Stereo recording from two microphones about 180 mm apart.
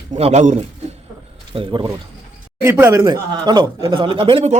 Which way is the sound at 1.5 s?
25° right (ahead or behind).